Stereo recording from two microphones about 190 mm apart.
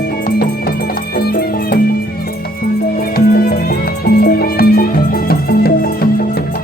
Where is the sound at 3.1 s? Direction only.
50° left (ahead or behind).